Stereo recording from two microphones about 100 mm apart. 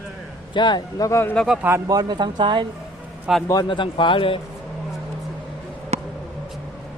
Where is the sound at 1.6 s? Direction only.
25° right (ahead or behind).